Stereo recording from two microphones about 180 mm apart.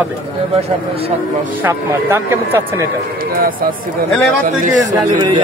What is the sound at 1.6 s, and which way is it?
Speech, 15° right (ahead or behind).